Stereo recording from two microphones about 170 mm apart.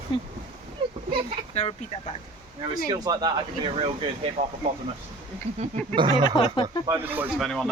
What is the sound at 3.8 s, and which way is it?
Speech, 35° right (ahead or behind).